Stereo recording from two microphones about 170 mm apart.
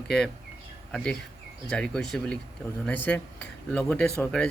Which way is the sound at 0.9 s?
5° left (ahead or behind).